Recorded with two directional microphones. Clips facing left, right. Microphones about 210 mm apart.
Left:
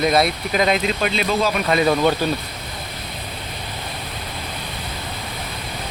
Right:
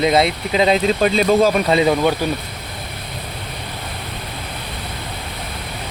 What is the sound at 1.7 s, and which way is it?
Speech, 25° right (ahead or behind).